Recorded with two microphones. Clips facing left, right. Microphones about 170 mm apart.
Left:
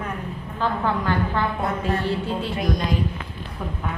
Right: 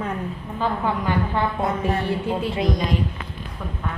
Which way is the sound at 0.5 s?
15° right (ahead or behind).